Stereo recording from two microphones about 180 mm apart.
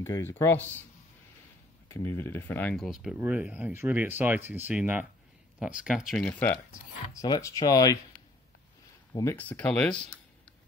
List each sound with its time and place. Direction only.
0.0 s speech: 15° left (ahead or behind)
1.9 s speech: 15° left (ahead or behind)
2.7 s speech: centre (ahead or behind)
6.7 s speech: 20° left (ahead or behind)
9.1 s speech: 15° left (ahead or behind)